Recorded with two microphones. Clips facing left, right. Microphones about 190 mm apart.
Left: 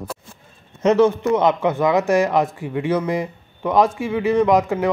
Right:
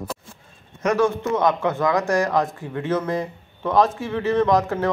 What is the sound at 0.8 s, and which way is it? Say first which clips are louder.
A man's voice: left 5 dB; 20° left (ahead or behind).